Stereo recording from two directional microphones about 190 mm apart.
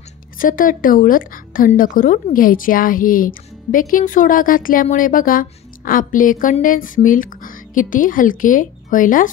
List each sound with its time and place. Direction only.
0.4 s speech: 45° left (ahead or behind)